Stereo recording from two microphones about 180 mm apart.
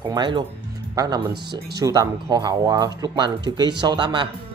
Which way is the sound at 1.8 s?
20° right (ahead or behind).